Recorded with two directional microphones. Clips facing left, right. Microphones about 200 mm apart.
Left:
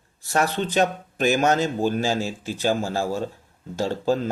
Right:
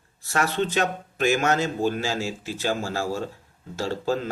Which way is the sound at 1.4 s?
15° left (ahead or behind).